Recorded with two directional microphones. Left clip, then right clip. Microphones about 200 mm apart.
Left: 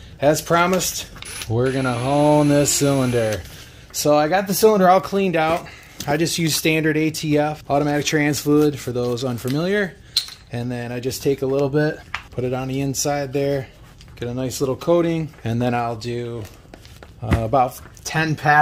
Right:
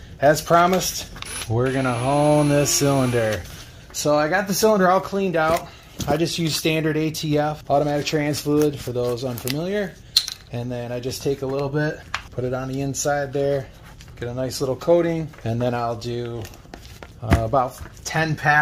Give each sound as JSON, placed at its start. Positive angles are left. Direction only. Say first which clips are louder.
{"t": 0.2, "sound": "speech", "louder": "right 1 dB", "side_deg": 30}
{"t": 3.9, "sound": "speech", "louder": "left 3 dB", "side_deg": 40}
{"t": 7.6, "sound": "speech", "louder": "even", "side_deg": 40}
{"t": 17.2, "sound": "speech", "louder": "left 2 dB", "side_deg": 45}